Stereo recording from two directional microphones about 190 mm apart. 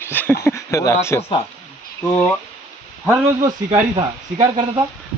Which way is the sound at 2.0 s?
5° left (ahead or behind).